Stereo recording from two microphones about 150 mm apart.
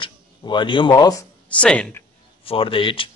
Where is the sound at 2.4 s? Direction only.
35° left (ahead or behind).